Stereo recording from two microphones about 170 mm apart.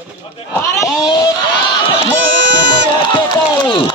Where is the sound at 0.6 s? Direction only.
20° left (ahead or behind).